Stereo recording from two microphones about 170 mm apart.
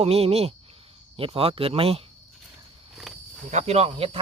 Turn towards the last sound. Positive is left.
turn(degrees=-35)  # may be behind; listen again after turning